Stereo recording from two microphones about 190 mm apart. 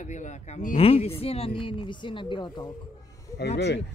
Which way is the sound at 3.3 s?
60° left (ahead or behind).